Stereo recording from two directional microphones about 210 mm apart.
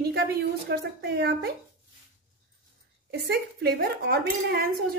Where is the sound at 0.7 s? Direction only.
50° right (ahead or behind).